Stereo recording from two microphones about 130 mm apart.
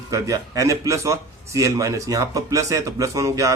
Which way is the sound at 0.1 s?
25° right (ahead or behind).